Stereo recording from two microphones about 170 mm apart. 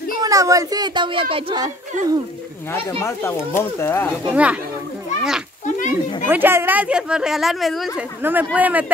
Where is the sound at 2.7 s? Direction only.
15° left (ahead or behind).